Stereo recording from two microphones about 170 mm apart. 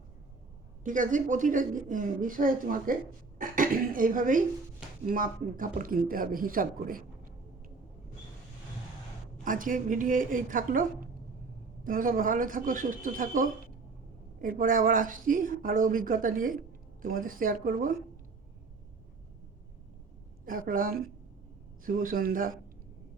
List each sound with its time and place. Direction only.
0.9 s a woman's voice: 50° right (ahead or behind)
9.4 s a woman's voice: 55° right (ahead or behind)
20.4 s speech: 55° right (ahead or behind)